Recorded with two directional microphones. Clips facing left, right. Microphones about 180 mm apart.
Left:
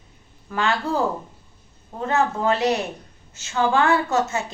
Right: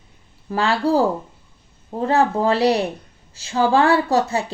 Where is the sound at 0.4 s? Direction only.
35° right (ahead or behind).